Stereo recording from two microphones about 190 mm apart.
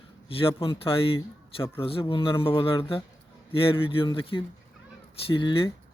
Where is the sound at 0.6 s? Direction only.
30° left (ahead or behind).